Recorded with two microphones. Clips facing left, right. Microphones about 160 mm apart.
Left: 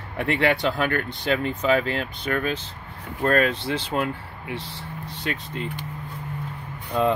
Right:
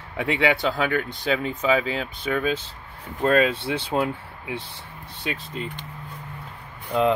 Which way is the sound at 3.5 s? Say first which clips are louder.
Even; 60° right (ahead or behind).